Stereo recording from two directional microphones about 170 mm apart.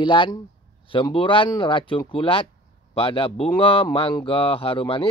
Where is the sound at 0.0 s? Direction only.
30° left (ahead or behind).